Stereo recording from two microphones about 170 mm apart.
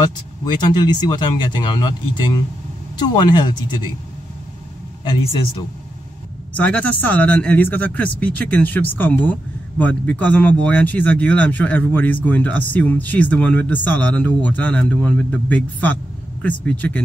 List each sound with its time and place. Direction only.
0.0 s speech: 25° left (ahead or behind)
5.0 s speech: 30° left (ahead or behind)
6.5 s speech: 10° left (ahead or behind)